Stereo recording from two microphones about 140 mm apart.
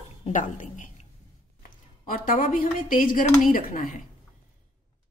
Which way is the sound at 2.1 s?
80° left.